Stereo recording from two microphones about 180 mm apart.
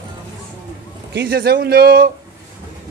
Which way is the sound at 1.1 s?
70° right (ahead or behind).